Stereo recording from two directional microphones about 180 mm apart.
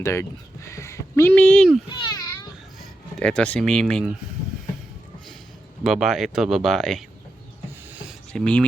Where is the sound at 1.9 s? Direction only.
25° left (ahead or behind).